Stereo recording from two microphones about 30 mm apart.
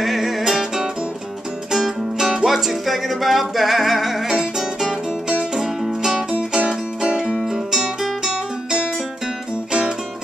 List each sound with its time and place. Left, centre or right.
0.0 s music: centre
6.7 s music: right